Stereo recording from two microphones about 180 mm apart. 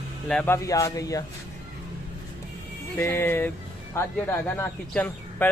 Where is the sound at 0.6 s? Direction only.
15° left (ahead or behind).